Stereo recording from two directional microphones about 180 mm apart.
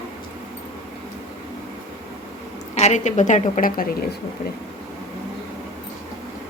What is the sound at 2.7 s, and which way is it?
A woman's voice, 40° left (ahead or behind).